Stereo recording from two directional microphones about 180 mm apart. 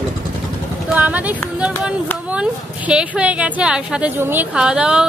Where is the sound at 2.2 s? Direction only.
5° right (ahead or behind).